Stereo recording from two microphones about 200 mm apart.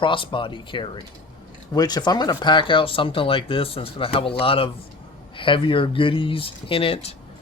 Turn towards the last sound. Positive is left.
turn(degrees=30)  # may be behind; listen again after turning